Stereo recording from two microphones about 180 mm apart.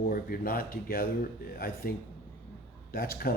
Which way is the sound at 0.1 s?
55° left (ahead or behind).